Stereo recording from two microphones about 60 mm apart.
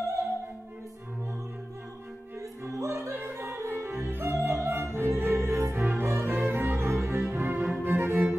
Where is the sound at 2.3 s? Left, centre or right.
Right.